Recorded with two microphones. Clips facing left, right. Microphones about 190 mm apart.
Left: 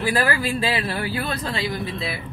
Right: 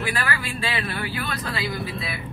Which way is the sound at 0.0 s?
35° left (ahead or behind).